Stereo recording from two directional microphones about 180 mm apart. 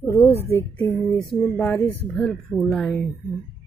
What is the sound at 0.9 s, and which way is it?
Speech, centre (ahead or behind).